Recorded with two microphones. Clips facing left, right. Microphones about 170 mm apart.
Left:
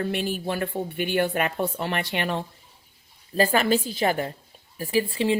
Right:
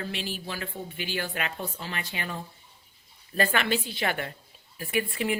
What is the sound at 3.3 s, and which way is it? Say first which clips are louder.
A woman's voice: left 5 dB; 35° left (ahead or behind).